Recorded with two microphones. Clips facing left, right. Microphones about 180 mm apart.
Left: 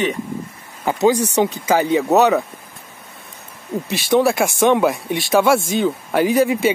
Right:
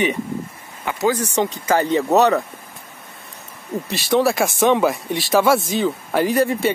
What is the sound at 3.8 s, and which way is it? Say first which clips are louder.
Speech: left 2 dB; centre (ahead or behind).